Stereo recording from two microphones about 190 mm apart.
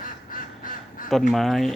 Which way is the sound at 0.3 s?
45° left (ahead or behind).